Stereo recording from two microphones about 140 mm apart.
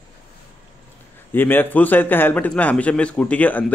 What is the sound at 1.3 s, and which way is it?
A man's voice, 15° left (ahead or behind).